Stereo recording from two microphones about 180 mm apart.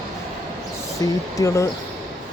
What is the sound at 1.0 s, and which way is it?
Speech, 20° left (ahead or behind).